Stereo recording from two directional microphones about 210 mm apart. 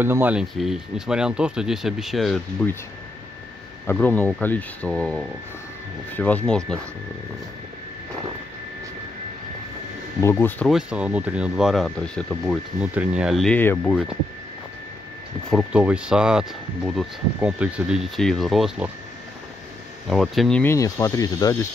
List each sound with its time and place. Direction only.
0.0 s speech: 10° right (ahead or behind); by 2.8 s 5° left (ahead or behind)
3.8 s speech: 5° left (ahead or behind)
10.2 s speech: 10° left (ahead or behind)
10.7 s speech: 5° right (ahead or behind)
12.8 s speech: 5° right (ahead or behind)
15.5 s speech: 5° right (ahead or behind)
20.1 s speech: centre (ahead or behind); by 21.6 s 15° left (ahead or behind)